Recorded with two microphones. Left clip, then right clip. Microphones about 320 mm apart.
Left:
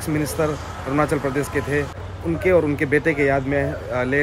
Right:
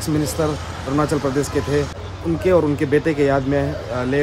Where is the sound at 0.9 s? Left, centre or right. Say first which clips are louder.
Even; centre.